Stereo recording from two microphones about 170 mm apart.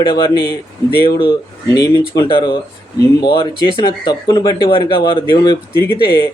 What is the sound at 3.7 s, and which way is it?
Speech, 25° left (ahead or behind).